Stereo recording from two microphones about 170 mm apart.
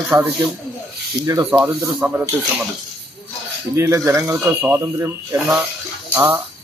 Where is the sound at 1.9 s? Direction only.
10° right (ahead or behind).